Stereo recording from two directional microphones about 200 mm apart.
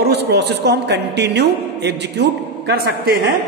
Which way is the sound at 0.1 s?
55° right (ahead or behind).